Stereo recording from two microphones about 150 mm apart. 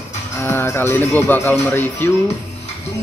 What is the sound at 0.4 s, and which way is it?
Speech, 15° left (ahead or behind).